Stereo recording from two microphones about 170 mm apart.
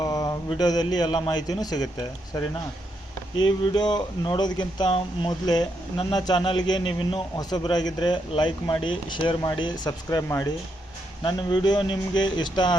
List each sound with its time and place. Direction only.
0.0 s a man's voice: 20° left (ahead or behind)
3.4 s speech: 25° left (ahead or behind)